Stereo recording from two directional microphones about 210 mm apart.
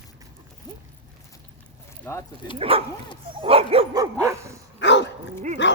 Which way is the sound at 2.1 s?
10° left (ahead or behind).